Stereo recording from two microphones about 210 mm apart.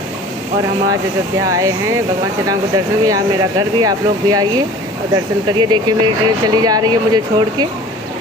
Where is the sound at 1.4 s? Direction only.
15° right (ahead or behind).